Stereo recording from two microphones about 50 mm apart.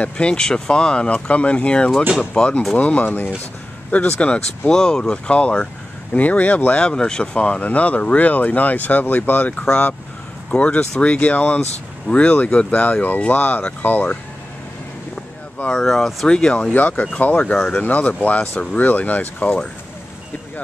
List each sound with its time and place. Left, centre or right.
0.0 s speech: centre
3.1 s speech: left
3.9 s speech: left
4.3 s speech: centre; by 6.8 s left
6.8 s speech: centre
15.7 s speech: centre
16.3 s speech: centre
16.7 s speech: left
18.4 s speech: centre
18.7 s speech: left